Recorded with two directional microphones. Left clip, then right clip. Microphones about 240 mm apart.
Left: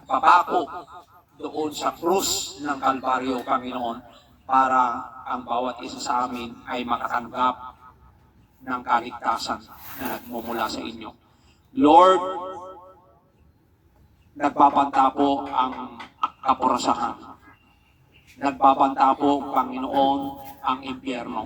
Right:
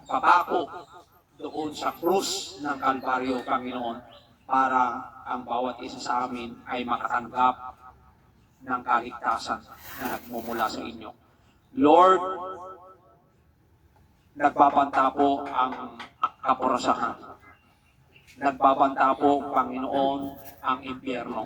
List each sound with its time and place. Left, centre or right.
0.1 s a man's voice: left
8.9 s a man's voice: left
14.4 s speech: left
18.4 s speech: left